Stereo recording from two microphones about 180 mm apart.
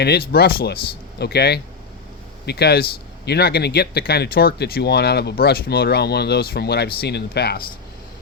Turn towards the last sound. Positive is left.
turn(degrees=65)  # may be behind; listen again after turning